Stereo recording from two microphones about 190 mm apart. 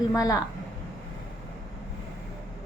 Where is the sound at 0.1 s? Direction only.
15° left (ahead or behind).